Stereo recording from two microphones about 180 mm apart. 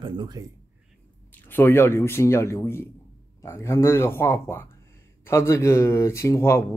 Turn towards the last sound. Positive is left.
turn(degrees=15)  # may be behind; listen again after turning